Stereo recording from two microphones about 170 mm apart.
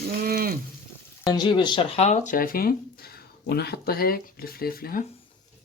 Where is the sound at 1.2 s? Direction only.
25° left (ahead or behind); by 2.7 s 60° left (ahead or behind).